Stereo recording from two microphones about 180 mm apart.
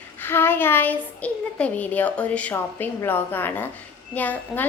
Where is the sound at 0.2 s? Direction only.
10° left (ahead or behind).